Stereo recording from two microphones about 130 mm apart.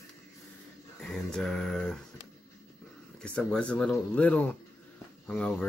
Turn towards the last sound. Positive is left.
turn(degrees=10)  # may be behind; listen again after turning